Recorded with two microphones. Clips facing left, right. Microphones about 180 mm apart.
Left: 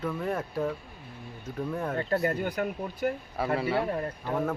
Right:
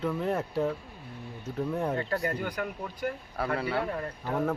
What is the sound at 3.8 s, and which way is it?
Speech, 30° left (ahead or behind).